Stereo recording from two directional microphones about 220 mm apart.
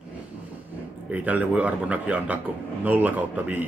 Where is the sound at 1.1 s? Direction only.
5° right (ahead or behind).